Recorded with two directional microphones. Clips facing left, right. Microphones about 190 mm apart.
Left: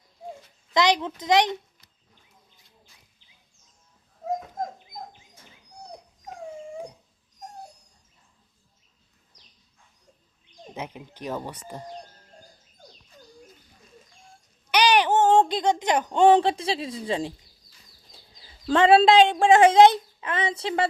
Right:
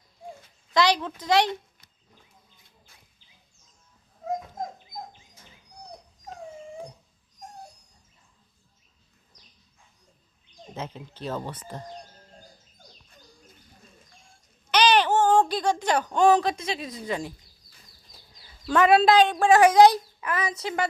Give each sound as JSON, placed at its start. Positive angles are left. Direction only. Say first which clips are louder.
{"t": 0.7, "sound": "a child's voice", "louder": "left 1 dB", "side_deg": 20}
{"t": 10.8, "sound": "speech", "louder": "even", "side_deg": 15}
{"t": 14.7, "sound": "speech", "louder": "even", "side_deg": 15}
{"t": 18.6, "sound": "a child's voice", "louder": "left 2 dB", "side_deg": 30}